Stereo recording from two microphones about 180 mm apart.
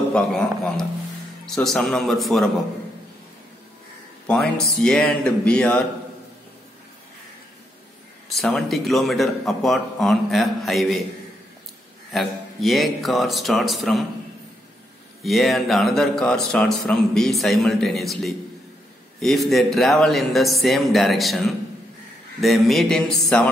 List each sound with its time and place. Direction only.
0.1 s a man's voice: 5° left (ahead or behind)
4.3 s a man's voice: centre (ahead or behind)
8.4 s a man's voice: 5° left (ahead or behind)
12.1 s a man's voice: centre (ahead or behind)
15.2 s a man's voice: centre (ahead or behind)